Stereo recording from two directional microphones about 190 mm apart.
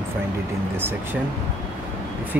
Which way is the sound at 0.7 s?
10° right (ahead or behind).